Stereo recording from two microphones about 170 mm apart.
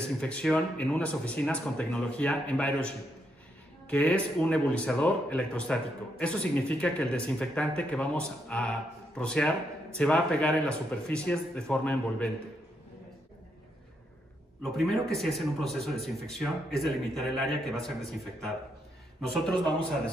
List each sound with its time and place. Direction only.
0.0 s speech: 5° left (ahead or behind)
14.6 s speech: centre (ahead or behind)